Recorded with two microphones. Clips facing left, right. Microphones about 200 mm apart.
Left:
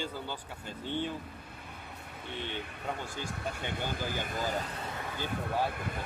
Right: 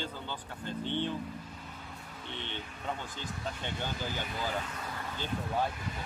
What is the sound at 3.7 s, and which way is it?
Speech, 50° left (ahead or behind).